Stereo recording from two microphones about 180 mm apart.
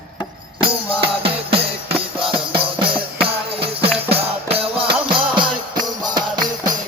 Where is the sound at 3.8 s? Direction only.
30° right (ahead or behind).